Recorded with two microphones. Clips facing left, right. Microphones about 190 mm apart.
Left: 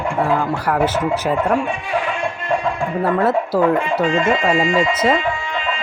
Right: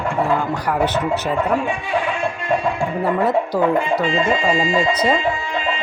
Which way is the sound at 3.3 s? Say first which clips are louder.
Left 1 dB; 5° left (ahead or behind).